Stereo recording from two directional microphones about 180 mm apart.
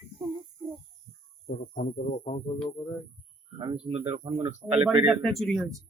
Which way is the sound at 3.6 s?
30° right (ahead or behind).